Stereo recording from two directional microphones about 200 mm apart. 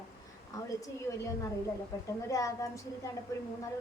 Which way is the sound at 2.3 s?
15° left (ahead or behind).